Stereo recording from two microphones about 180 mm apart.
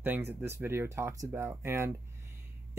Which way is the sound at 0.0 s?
10° right (ahead or behind).